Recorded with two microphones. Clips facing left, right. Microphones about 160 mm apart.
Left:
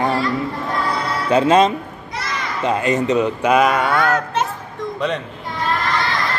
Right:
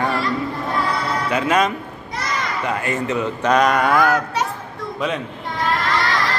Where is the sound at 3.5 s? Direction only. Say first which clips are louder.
Even; 5° left (ahead or behind).